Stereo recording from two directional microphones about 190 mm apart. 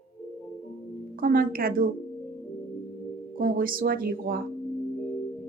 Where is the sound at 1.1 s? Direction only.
50° right (ahead or behind).